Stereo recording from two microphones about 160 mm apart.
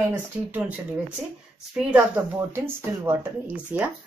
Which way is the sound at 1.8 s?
10° right (ahead or behind).